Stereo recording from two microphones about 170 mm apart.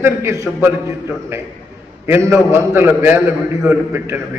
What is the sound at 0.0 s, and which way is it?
A man's voice, 15° right (ahead or behind).